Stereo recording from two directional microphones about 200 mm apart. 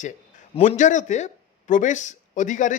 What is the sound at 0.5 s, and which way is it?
Speech, 35° left (ahead or behind).